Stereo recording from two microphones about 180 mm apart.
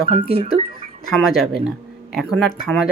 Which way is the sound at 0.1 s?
30° right (ahead or behind).